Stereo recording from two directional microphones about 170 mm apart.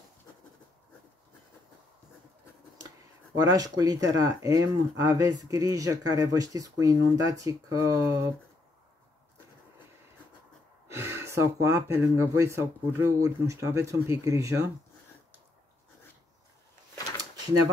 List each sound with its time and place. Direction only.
3.4 s speech: 20° right (ahead or behind)
10.9 s speech: 15° right (ahead or behind)
17.2 s drawer open or close: 20° right (ahead or behind)